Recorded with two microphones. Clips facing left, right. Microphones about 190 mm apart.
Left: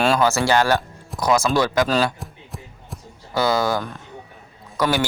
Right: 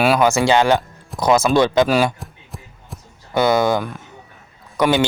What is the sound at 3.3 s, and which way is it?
Speech, 20° right (ahead or behind).